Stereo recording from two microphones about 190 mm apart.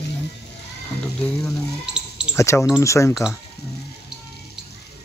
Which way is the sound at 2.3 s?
15° left (ahead or behind).